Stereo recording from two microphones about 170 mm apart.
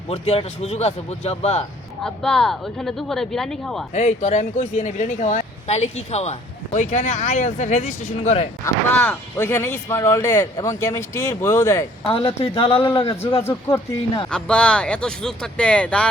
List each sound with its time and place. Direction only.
0.1 s speech: 35° left (ahead or behind)
2.0 s speech: 5° left (ahead or behind)
3.9 s speech: 40° left (ahead or behind)
8.6 s speech: 10° left (ahead or behind)
12.0 s speech: 30° left (ahead or behind)
13.4 s speech: 15° left (ahead or behind)
14.3 s speech: 5° left (ahead or behind)